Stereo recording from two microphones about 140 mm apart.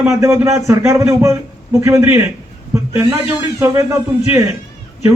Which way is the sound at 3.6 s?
20° right (ahead or behind).